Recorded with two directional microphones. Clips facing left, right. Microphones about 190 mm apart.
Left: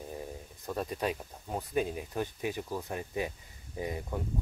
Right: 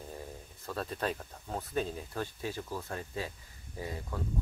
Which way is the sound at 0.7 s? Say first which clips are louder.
Left 2 dB; 15° left (ahead or behind).